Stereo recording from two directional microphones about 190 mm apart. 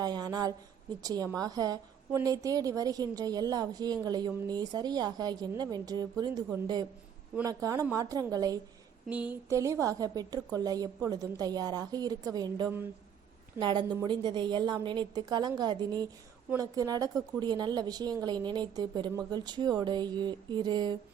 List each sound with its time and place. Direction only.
0.0 s a woman's voice: 20° right (ahead or behind)
7.4 s a woman's voice: 15° right (ahead or behind)
9.0 s a woman's voice: 10° right (ahead or behind); by 21.0 s 25° right (ahead or behind)